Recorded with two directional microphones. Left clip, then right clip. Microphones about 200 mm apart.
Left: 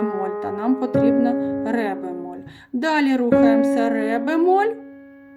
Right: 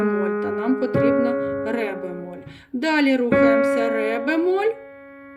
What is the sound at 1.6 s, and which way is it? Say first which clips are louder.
Music: left 1 dB; 35° left (ahead or behind).